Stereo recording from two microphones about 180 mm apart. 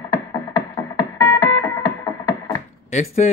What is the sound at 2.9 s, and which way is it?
Speech, 40° left (ahead or behind).